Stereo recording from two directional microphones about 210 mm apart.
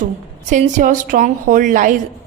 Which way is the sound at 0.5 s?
40° right (ahead or behind).